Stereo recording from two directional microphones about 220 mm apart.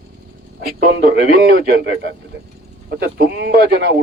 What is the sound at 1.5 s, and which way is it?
Speech, 45° right (ahead or behind).